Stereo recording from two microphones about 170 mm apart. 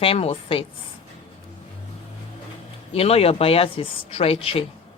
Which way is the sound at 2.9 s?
35° left (ahead or behind).